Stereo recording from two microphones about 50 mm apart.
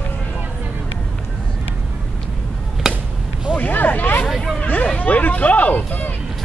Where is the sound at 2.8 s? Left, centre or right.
Centre.